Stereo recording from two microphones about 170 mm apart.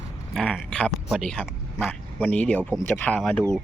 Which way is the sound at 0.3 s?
5° left (ahead or behind).